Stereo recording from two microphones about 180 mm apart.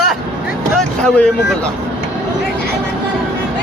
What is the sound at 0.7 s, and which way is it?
Vehicle, 5° left (ahead or behind).